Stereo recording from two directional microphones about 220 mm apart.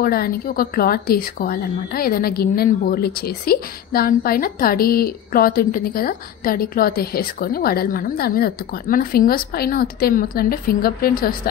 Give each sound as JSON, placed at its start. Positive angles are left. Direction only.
{"t": 0.0, "sound": "a woman's voice", "side_deg": 45}